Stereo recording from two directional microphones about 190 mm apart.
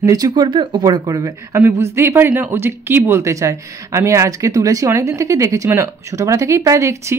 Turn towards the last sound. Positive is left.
turn(degrees=-15)  # may be behind; listen again after turning